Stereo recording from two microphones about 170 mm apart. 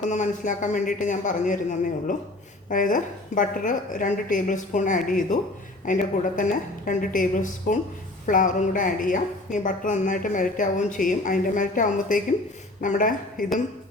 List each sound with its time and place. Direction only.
0.1 s a woman's voice: 45° left (ahead or behind)
2.6 s a woman's voice: 50° left (ahead or behind)